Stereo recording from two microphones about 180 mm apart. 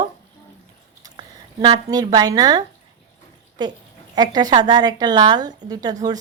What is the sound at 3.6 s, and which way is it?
A woman's voice, 25° right (ahead or behind).